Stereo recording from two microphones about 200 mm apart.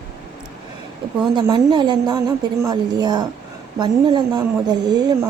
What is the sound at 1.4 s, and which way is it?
Speech, 20° right (ahead or behind).